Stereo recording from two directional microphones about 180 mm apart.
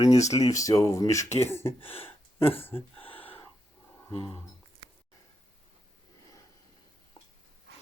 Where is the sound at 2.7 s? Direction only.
30° left (ahead or behind).